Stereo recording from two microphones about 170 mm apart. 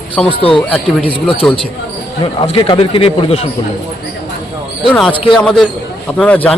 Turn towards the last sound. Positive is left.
turn(degrees=5)  # may be behind; listen again after turning